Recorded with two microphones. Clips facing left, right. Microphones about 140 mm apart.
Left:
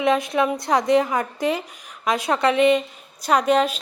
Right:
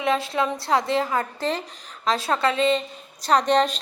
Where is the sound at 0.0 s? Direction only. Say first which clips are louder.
Left 3 dB; 20° left (ahead or behind).